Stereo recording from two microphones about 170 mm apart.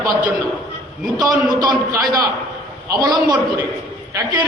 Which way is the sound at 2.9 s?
25° right (ahead or behind).